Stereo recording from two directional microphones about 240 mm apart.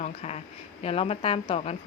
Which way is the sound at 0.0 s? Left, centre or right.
Left.